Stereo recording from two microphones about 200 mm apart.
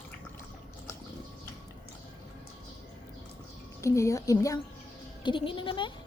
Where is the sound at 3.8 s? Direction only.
15° left (ahead or behind).